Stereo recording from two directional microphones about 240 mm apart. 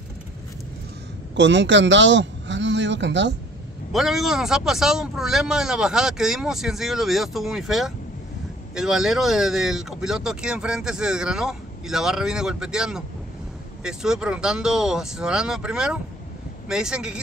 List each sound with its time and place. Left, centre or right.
1.3 s a man's voice: right
3.9 s speech: centre